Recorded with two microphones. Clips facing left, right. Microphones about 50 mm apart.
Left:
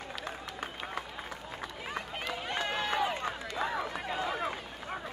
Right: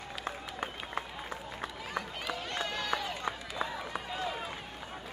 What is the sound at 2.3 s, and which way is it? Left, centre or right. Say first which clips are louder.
Run: left 4 dB; centre.